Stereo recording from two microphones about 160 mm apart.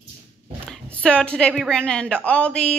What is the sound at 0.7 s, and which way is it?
A woman's voice, 5° left (ahead or behind).